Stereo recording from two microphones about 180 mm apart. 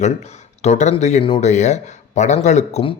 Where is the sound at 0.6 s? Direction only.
40° left (ahead or behind).